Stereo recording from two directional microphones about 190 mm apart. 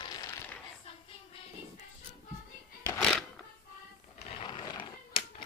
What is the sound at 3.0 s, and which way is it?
Music, centre (ahead or behind).